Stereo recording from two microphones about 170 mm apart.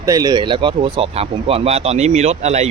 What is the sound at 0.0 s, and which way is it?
Speech, 20° right (ahead or behind).